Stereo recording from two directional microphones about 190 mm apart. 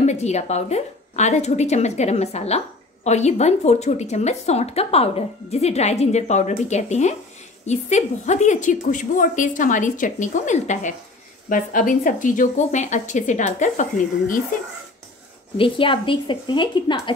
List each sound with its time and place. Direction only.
0.0 s a woman's voice: 35° left (ahead or behind)
15.5 s speech: 25° left (ahead or behind)